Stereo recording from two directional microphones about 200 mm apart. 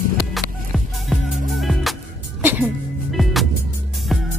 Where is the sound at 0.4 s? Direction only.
Centre (ahead or behind).